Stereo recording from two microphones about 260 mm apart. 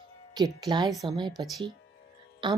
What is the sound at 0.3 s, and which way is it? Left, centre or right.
Speech, centre.